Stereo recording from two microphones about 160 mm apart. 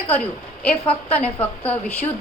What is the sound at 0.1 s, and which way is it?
A woman's voice, 10° left (ahead or behind).